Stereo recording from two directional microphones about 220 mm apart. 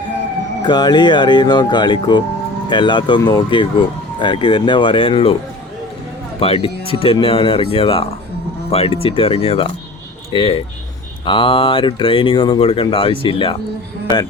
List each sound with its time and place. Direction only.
0.6 s speech: 20° left (ahead or behind)
6.4 s speech: 25° left (ahead or behind)